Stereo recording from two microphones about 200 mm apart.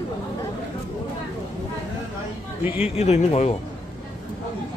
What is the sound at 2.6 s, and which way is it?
Speech, 10° right (ahead or behind).